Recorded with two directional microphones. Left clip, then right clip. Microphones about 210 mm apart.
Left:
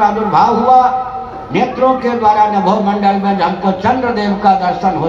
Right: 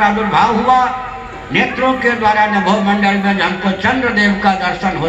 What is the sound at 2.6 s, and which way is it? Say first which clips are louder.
A man's voice: left 1 dB; 55° left (ahead or behind).